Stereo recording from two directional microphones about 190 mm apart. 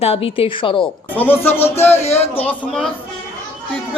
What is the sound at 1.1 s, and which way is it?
Speech, 10° left (ahead or behind).